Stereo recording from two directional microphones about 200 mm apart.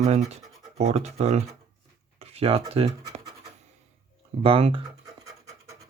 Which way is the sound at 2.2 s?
30° right (ahead or behind).